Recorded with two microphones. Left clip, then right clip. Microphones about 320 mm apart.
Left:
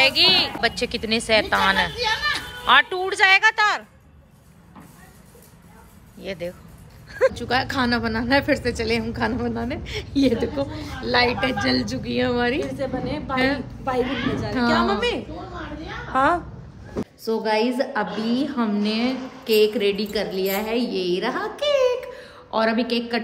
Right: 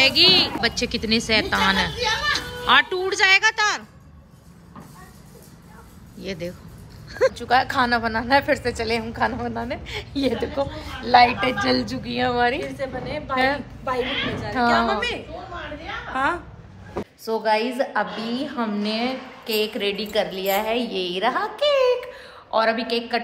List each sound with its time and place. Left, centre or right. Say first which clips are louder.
0.0 s a woman's voice: right 1 dB; centre
6.2 s a woman's voice: left 1 dB; centre
12.7 s a woman's voice: left 1 dB; centre
13.3 s a woman's voice: right 2 dB; centre
16.1 s a woman's voice: left 4 dB; left
17.3 s a woman's voice: even; centre